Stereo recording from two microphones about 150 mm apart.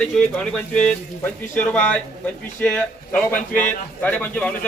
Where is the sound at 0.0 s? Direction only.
5° left (ahead or behind).